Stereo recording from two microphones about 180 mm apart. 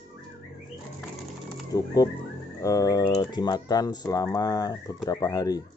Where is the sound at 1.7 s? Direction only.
20° left (ahead or behind).